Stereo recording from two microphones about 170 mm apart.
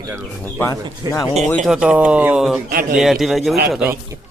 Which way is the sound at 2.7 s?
55° right (ahead or behind).